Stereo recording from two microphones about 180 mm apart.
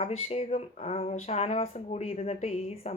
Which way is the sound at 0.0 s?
35° left (ahead or behind).